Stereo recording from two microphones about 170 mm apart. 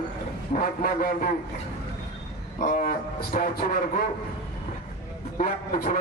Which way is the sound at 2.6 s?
45° left (ahead or behind).